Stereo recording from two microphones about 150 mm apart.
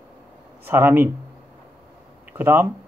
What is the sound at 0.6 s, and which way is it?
Speech, 15° right (ahead or behind).